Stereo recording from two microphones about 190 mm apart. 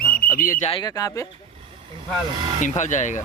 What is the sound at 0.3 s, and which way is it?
Speech, 45° left (ahead or behind).